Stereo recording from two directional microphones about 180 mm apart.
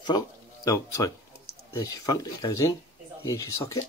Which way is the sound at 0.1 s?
20° left (ahead or behind).